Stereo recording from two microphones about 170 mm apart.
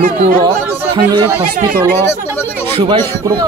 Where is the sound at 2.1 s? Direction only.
15° left (ahead or behind).